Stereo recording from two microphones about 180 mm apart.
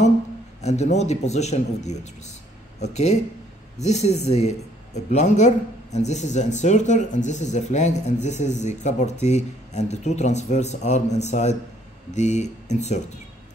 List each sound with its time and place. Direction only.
0.6 s speech: 40° left (ahead or behind)